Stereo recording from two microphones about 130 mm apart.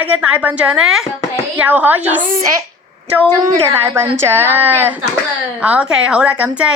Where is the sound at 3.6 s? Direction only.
20° right (ahead or behind).